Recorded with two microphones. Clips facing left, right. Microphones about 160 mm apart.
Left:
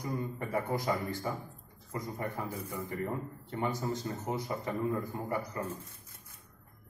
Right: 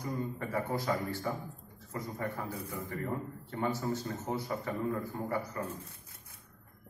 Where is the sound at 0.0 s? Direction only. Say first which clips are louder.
Even; 15° left (ahead or behind).